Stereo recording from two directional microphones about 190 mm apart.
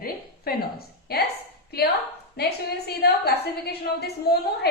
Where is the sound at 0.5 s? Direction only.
50° left (ahead or behind).